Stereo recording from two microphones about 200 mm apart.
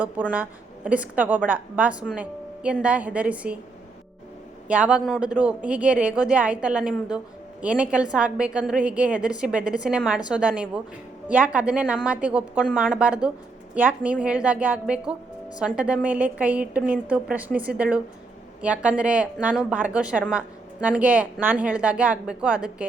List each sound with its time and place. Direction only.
0.0 s a woman's voice: 10° right (ahead or behind)
4.7 s a woman's voice: 5° right (ahead or behind)